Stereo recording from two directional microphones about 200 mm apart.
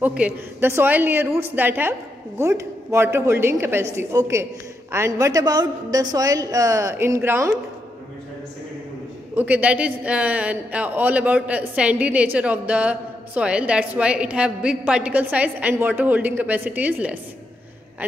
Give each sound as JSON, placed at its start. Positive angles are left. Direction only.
{"t": 0.0, "sound": "a man's voice", "side_deg": -5}
{"t": 9.3, "sound": "a man's voice", "side_deg": -10}